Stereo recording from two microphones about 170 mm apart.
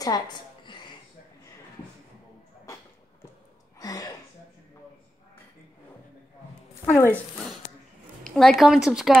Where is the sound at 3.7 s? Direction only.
20° left (ahead or behind).